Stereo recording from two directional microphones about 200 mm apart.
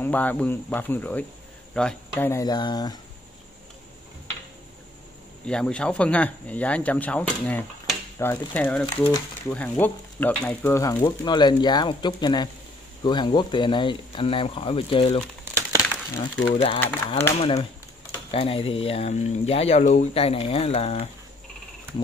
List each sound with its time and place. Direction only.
0.0 s speech: 10° left (ahead or behind)
5.5 s speech: 5° left (ahead or behind)
9.5 s speech: 10° left (ahead or behind); by 15.2 s 30° left (ahead or behind)
15.5 s crushing: 15° right (ahead or behind)
16.4 s speech: 25° left (ahead or behind)